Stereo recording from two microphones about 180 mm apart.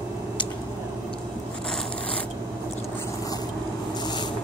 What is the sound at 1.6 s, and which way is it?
Scissors, 5° left (ahead or behind).